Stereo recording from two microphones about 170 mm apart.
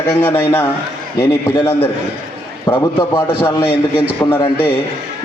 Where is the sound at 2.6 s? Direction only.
20° left (ahead or behind).